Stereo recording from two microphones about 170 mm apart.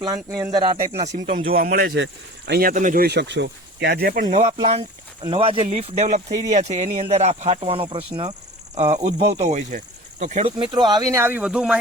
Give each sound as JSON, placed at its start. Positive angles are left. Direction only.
{"t": 0.0, "sound": "speech", "side_deg": -20}
{"t": 1.0, "sound": "speech", "side_deg": -45}
{"t": 1.5, "sound": "speech", "side_deg": -60}
{"t": 3.1, "sound": "speech", "side_deg": -85}
{"t": 4.6, "sound": "speech", "side_deg": -35}
{"t": 9.0, "sound": "speech", "side_deg": -40}
{"t": 10.4, "sound": "speech", "side_deg": -30}